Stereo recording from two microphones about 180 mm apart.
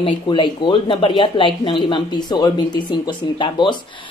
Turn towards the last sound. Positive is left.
turn(degrees=25)  # may be behind; listen again after turning